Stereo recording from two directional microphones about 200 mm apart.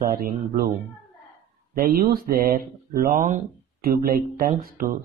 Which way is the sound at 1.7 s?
45° right (ahead or behind).